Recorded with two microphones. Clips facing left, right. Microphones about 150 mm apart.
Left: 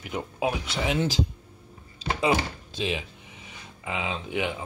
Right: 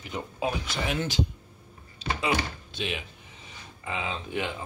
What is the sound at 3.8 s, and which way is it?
Rub, 15° left (ahead or behind).